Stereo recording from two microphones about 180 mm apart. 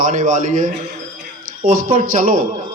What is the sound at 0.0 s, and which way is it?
Speech, 45° right (ahead or behind).